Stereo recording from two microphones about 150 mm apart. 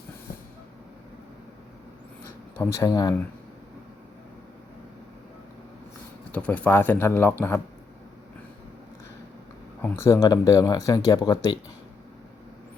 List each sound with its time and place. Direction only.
2.6 s speech: 20° left (ahead or behind)
6.3 s speech: 10° left (ahead or behind)
9.8 s speech: 20° left (ahead or behind)